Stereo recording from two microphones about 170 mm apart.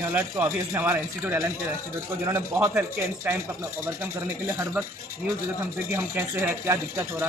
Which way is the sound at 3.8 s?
15° right (ahead or behind).